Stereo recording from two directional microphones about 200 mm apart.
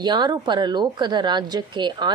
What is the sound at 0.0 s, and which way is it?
A woman's voice, 20° right (ahead or behind).